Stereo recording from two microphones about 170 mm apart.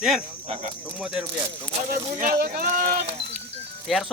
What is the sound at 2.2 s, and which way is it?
Speech, 55° right (ahead or behind).